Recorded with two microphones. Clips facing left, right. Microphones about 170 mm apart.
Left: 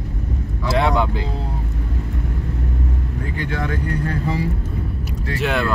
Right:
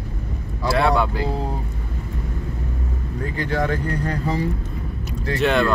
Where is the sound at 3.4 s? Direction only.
40° right (ahead or behind).